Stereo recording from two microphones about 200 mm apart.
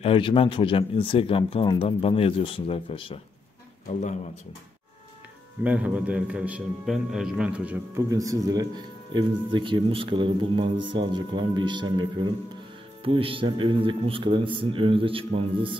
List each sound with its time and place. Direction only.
0.0 s speech: 25° left (ahead or behind)
5.6 s a man's voice: 5° right (ahead or behind); by 15.7 s 25° right (ahead or behind)